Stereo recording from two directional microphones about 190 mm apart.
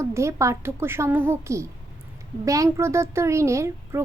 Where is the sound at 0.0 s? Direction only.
15° right (ahead or behind).